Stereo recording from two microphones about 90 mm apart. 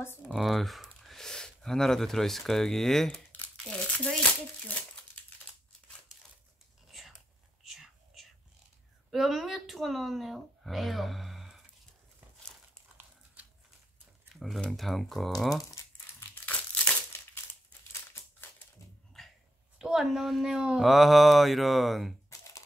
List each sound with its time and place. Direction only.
0.3 s speech: centre (ahead or behind)
3.3 s crumpling: 15° left (ahead or behind)
7.6 s whispering: 5° right (ahead or behind)
9.1 s speech: 5° right (ahead or behind)
14.3 s speech: centre (ahead or behind)
15.5 s crumpling: 30° left (ahead or behind)
16.4 s crumpling: 15° left (ahead or behind)
17.9 s crumpling: 25° left (ahead or behind)
19.2 s a sound: 5° left (ahead or behind)
19.8 s speech: 5° right (ahead or behind)
22.3 s typing: 40° left (ahead or behind)